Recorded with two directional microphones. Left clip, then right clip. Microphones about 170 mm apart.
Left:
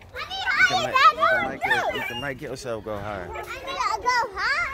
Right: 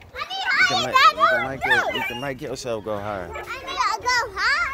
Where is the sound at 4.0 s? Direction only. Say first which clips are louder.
Right 1 dB; 55° right (ahead or behind).